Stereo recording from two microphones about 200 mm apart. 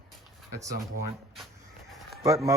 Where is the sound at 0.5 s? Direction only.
15° right (ahead or behind).